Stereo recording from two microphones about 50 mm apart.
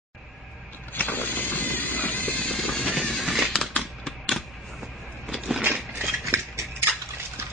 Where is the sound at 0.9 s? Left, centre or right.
Left.